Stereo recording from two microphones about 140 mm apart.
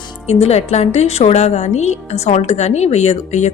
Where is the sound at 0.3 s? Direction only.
45° left (ahead or behind).